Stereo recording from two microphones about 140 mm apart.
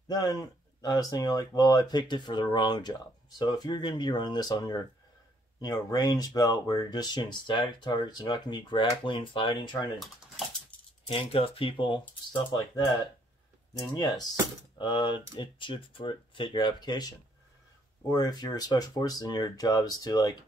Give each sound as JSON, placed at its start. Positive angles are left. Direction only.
{"t": 0.1, "sound": "speech", "side_deg": 25}
{"t": 11.1, "sound": "speech", "side_deg": 40}
{"t": 13.9, "sound": "speech", "side_deg": 30}
{"t": 18.1, "sound": "speech", "side_deg": 30}